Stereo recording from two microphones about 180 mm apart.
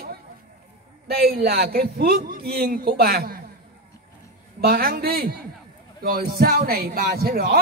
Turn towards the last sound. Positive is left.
turn(degrees=-55)  # may be behind; listen again after turning